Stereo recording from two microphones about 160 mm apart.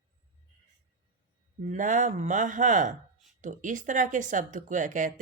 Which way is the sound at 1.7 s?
50° right (ahead or behind).